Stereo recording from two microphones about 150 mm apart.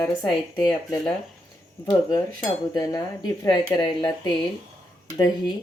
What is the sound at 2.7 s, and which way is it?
Speech, 25° left (ahead or behind).